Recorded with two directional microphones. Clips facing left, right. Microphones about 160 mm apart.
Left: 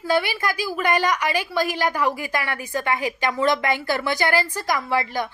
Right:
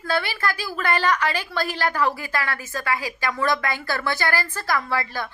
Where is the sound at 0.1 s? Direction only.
15° left (ahead or behind).